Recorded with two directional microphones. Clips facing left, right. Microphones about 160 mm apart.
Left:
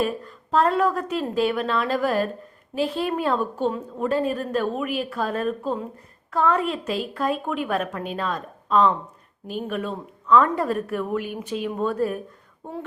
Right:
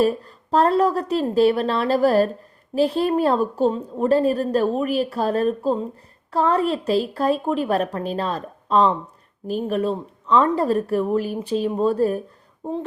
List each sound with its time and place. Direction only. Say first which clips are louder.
0.0 s a woman's voice: right 6 dB; 35° right (ahead or behind)